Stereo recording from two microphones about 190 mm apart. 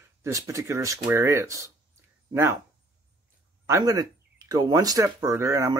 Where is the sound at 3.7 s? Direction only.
15° right (ahead or behind).